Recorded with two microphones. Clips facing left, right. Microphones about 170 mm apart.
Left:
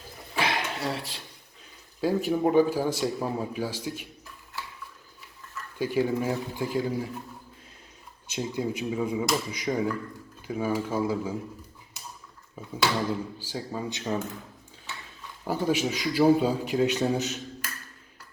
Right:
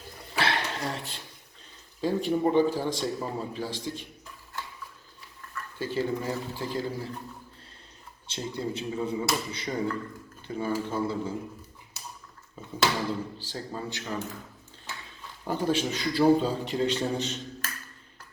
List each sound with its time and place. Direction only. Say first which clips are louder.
0.3 s a sound: even; 10° left (ahead or behind)
2.0 s a man's voice: left 1 dB; 10° left (ahead or behind)
5.8 s a man's voice: left 4 dB; 15° left (ahead or behind)
8.3 s a man's voice: left 3 dB; 10° left (ahead or behind)
12.6 s a sound: left 2 dB; 10° left (ahead or behind)
13.4 s a man's voice: left 3 dB; 10° left (ahead or behind)
13.9 s speech: left 5 dB; 20° left (ahead or behind)
15.4 s a man's voice: left 1 dB; 10° left (ahead or behind)